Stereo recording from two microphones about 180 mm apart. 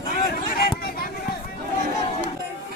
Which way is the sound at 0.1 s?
55° left (ahead or behind).